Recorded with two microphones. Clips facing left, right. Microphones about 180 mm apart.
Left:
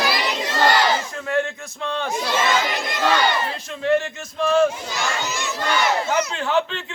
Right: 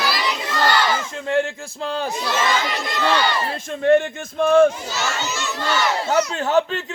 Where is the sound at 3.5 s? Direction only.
55° right (ahead or behind).